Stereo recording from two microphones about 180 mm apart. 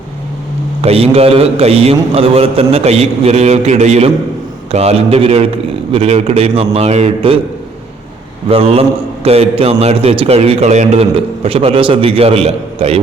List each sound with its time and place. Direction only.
0.8 s a man's voice: 35° right (ahead or behind)
8.4 s a man's voice: 35° right (ahead or behind)